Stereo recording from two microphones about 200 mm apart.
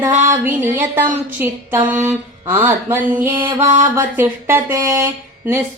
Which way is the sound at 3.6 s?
40° right (ahead or behind).